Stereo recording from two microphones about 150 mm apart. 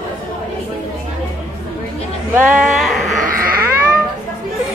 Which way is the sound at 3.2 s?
70° right (ahead or behind).